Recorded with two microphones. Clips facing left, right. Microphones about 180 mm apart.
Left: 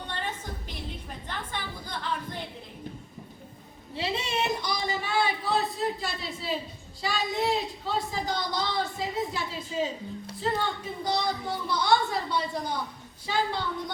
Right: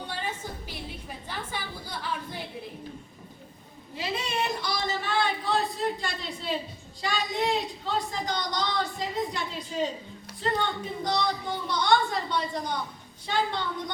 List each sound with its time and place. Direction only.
0.1 s music: 10° right (ahead or behind)
3.9 s a sound: 25° left (ahead or behind); by 6.6 s centre (ahead or behind)
7.0 s a woman's voice: 5° left (ahead or behind)